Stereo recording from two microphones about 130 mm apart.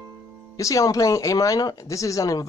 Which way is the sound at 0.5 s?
25° left (ahead or behind).